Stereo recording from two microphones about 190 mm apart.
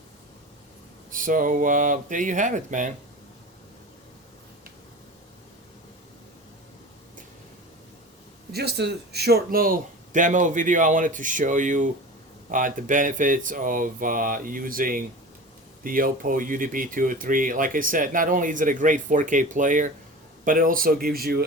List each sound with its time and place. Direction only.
1.1 s speech: 45° right (ahead or behind)
8.5 s speech: 60° right (ahead or behind)